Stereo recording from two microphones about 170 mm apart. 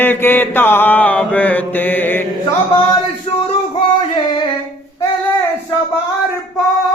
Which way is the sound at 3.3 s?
35° left (ahead or behind).